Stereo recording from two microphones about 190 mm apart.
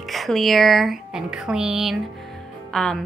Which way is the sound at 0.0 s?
Centre (ahead or behind).